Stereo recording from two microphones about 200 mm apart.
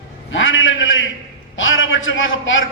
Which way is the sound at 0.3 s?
70° left (ahead or behind).